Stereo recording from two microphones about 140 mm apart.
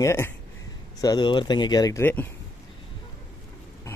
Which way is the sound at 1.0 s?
30° left (ahead or behind).